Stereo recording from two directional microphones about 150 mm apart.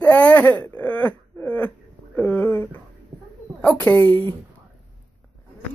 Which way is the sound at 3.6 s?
10° left (ahead or behind).